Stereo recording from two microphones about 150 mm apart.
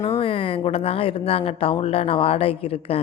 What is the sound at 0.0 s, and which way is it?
Speech, 35° left (ahead or behind).